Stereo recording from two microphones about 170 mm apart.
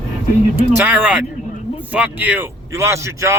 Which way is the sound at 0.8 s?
10° right (ahead or behind).